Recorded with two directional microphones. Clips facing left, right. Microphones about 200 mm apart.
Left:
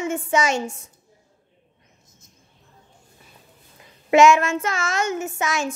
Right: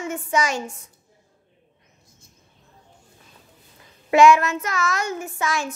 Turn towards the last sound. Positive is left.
turn(degrees=20)  # may be behind; listen again after turning